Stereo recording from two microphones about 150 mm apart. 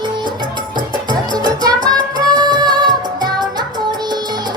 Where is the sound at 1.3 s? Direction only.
30° right (ahead or behind).